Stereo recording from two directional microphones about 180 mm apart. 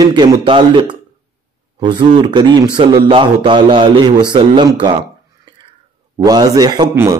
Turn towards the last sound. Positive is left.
turn(degrees=-20)  # may be behind; listen again after turning